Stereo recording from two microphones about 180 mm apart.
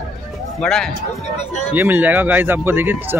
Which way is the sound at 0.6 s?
5° left (ahead or behind).